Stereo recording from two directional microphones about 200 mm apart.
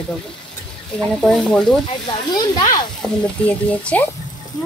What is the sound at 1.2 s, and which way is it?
Speech, centre (ahead or behind).